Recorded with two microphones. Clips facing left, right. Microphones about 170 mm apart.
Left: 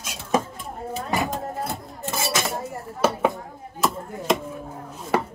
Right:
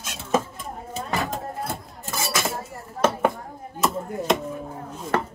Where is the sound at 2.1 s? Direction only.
20° left (ahead or behind).